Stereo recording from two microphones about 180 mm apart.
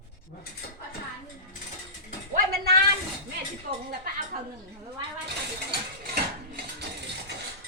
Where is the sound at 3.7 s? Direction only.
50° right (ahead or behind).